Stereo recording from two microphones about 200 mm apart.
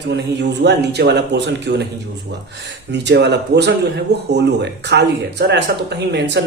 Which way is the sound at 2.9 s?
60° right (ahead or behind).